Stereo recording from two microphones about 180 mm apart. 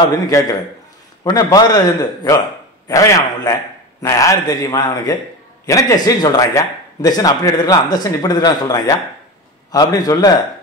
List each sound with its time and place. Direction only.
0.0 s a man's voice: 20° left (ahead or behind)